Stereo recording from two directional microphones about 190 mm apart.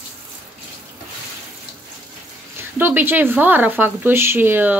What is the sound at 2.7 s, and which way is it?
Speech, 10° right (ahead or behind).